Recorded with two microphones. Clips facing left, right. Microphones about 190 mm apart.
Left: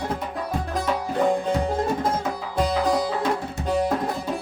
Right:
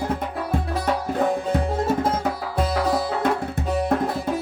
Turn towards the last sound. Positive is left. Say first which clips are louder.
# even
turn(degrees=-5)  # may be behind; listen again after turning